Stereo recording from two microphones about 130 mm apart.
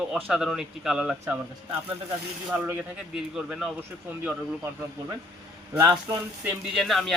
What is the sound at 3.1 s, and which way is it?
Speech, 5° right (ahead or behind).